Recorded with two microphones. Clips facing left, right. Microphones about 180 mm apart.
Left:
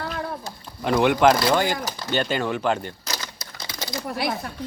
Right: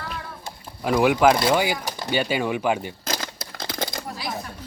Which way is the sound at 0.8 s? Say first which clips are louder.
Even; 5° right (ahead or behind).